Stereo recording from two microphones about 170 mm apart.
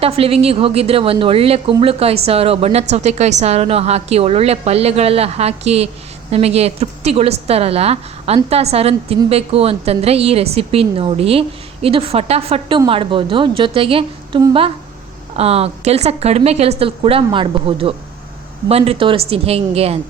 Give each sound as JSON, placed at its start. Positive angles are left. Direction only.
{"t": 0.0, "sound": "a woman's voice", "side_deg": -35}